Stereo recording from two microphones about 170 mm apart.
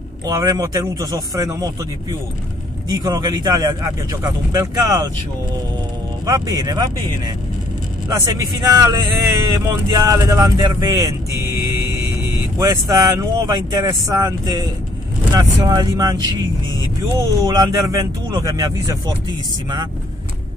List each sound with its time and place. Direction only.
0.3 s speech: 20° right (ahead or behind)
3.0 s speech: 25° right (ahead or behind)
6.2 s speech: 20° right (ahead or behind)
17.4 s speech: 20° right (ahead or behind)